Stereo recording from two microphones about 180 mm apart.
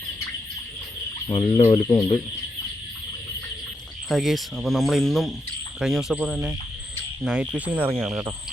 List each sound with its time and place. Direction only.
1.3 s speech: 30° left (ahead or behind)
4.1 s speech: centre (ahead or behind)